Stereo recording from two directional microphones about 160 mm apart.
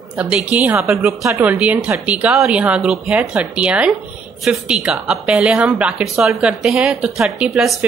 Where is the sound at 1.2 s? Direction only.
15° right (ahead or behind).